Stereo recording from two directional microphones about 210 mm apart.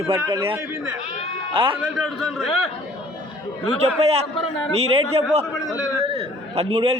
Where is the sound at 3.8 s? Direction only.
30° right (ahead or behind).